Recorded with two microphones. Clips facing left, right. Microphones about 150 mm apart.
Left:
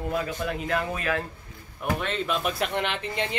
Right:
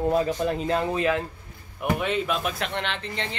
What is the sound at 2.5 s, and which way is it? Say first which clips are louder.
Speech: left 2 dB; 5° left (ahead or behind).